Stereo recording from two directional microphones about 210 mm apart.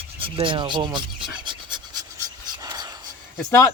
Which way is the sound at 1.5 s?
20° right (ahead or behind).